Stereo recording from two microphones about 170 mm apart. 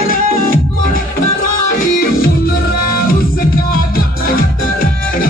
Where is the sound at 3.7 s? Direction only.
60° left (ahead or behind).